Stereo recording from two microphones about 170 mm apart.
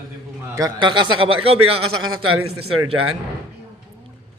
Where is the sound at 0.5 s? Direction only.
25° right (ahead or behind).